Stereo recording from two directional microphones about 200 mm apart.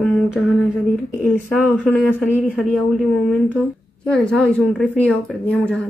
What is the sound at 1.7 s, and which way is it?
A woman's voice, 5° left (ahead or behind).